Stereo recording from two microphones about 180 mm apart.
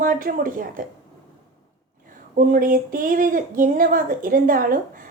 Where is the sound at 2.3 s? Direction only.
50° right (ahead or behind).